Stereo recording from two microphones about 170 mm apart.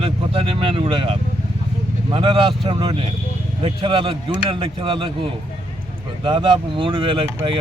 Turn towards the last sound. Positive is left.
turn(degrees=-30)  # may be behind; listen again after turning